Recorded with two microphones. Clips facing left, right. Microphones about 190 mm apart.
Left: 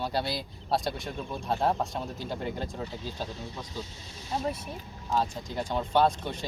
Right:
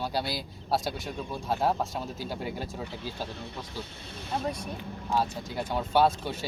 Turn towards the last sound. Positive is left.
turn(degrees=-5)  # may be behind; listen again after turning